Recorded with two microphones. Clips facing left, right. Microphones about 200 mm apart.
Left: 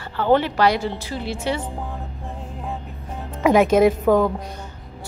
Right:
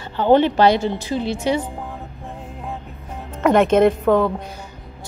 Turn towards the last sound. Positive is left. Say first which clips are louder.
# even
turn(degrees=0)  # may be behind; listen again after turning